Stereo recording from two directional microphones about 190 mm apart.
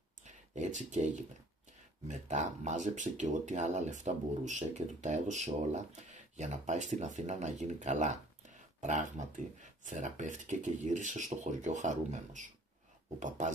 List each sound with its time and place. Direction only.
0.2 s speech: 40° right (ahead or behind)